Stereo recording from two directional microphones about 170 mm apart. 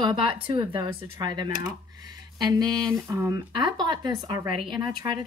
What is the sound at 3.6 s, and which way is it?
Speech, 25° right (ahead or behind).